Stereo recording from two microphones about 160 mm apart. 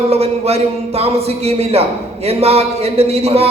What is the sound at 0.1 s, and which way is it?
A man's voice, 40° right (ahead or behind).